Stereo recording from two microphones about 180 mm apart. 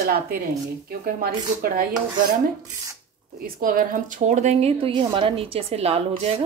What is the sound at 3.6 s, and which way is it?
A woman's voice, 50° right (ahead or behind).